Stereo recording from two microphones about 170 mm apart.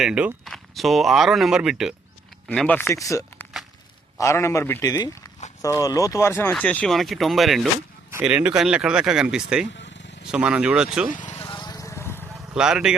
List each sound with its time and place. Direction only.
0.0 s speech: 5° right (ahead or behind)
2.5 s speech: 10° left (ahead or behind)
9.7 s vehicle: 90° left
10.2 s speech: 5° right (ahead or behind)
11.1 s vehicle: 45° left (ahead or behind)
11.4 s vehicle: 25° left (ahead or behind)
12.3 s vehicle: 5° right (ahead or behind)